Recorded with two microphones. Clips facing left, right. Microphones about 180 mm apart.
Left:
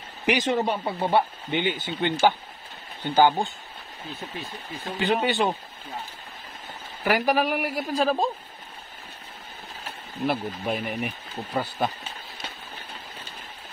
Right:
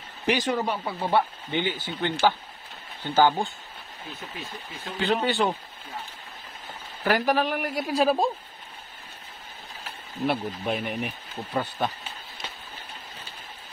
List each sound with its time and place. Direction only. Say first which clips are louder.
0.3 s a man's voice: left 2 dB; 20° left (ahead or behind)
4.8 s speech: left 1 dB; 20° left (ahead or behind)
7.1 s a man's voice: left 1 dB; 10° left (ahead or behind)
8.0 s speech: right 1 dB; 10° right (ahead or behind)
10.2 s speech: even; centre (ahead or behind)